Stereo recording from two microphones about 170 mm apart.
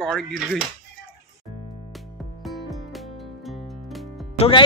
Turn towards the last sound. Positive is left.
turn(degrees=35)  # may be behind; listen again after turning